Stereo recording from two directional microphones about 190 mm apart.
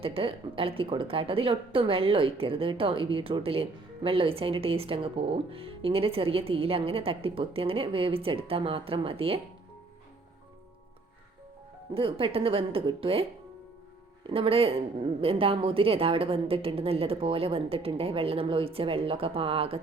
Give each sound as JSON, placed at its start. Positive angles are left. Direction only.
{"t": 0.0, "sound": "a woman's voice", "side_deg": -30}
{"t": 11.9, "sound": "a woman's voice", "side_deg": -30}
{"t": 14.3, "sound": "a woman's voice", "side_deg": -30}